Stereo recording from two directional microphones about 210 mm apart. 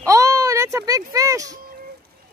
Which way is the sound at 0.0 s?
15° right (ahead or behind).